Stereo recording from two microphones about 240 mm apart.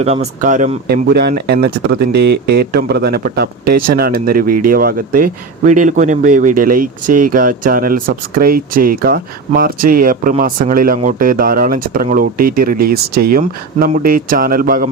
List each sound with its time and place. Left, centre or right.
0.0 s speech: right